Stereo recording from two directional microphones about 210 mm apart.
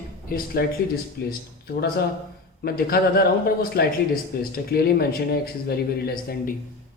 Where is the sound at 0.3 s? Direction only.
45° left (ahead or behind).